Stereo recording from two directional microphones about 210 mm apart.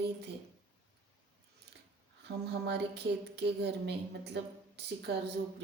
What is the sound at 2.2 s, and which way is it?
Speech, 50° right (ahead or behind).